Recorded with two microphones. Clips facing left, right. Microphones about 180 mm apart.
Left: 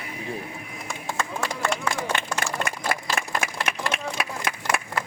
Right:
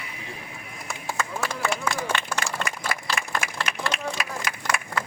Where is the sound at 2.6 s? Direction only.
50° left (ahead or behind).